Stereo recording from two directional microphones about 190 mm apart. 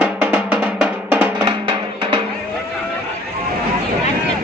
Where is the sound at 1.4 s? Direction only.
25° right (ahead or behind).